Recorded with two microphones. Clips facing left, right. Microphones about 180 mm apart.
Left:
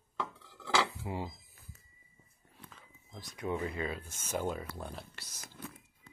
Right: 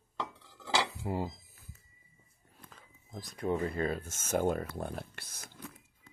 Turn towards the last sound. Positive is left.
turn(degrees=-55)  # may be behind; listen again after turning